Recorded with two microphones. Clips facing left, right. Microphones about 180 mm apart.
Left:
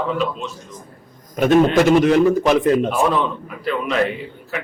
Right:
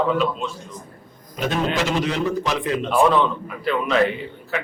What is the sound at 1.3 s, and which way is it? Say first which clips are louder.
A man's voice: left 9 dB; 50° left (ahead or behind).